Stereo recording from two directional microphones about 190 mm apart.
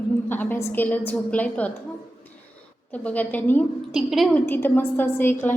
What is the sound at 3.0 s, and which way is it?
Speech, 10° left (ahead or behind).